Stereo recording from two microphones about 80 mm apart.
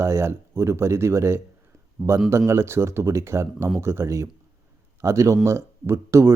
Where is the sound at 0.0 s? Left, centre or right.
Right.